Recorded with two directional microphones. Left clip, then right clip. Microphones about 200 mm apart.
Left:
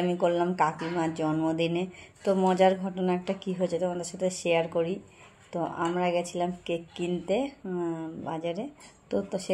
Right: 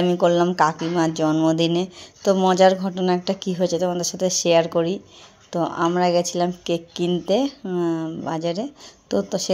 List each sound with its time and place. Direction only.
0.0 s speech: 45° right (ahead or behind)